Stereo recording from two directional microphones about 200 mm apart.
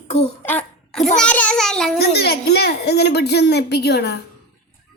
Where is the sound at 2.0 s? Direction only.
55° left (ahead or behind).